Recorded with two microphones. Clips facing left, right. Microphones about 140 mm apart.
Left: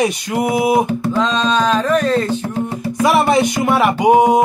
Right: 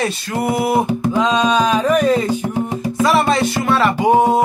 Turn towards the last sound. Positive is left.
turn(degrees=15)  # may be behind; listen again after turning